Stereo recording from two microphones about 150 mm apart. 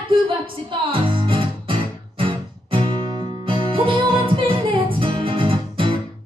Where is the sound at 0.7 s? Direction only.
35° right (ahead or behind).